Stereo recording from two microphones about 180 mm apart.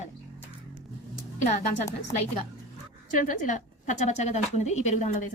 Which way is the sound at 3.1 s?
45° left (ahead or behind).